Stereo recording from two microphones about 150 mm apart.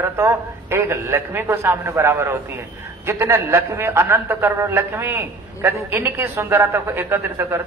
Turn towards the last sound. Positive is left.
turn(degrees=-15)  # may be behind; listen again after turning